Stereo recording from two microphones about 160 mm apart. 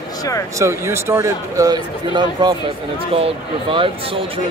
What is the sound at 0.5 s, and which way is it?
Speech, 15° right (ahead or behind).